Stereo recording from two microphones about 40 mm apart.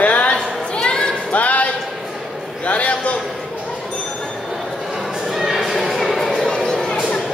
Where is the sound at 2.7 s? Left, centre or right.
Left.